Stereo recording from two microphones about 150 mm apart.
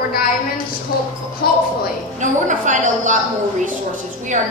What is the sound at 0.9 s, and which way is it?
Speech, 80° left.